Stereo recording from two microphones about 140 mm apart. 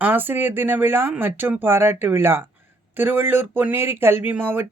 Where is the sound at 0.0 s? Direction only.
15° right (ahead or behind).